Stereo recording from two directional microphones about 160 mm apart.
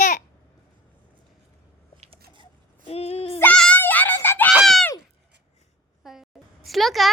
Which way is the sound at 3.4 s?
5° left (ahead or behind).